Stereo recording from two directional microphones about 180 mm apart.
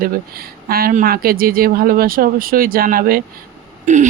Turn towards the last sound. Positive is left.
turn(degrees=-45)  # may be behind; listen again after turning